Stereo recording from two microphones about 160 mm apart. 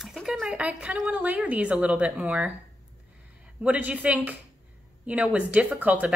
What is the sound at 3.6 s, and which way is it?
A woman's voice, 10° right (ahead or behind).